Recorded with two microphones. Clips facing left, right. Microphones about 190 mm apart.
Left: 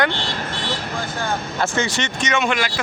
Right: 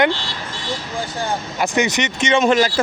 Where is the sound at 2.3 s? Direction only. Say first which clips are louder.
Right 7 dB; 40° right (ahead or behind).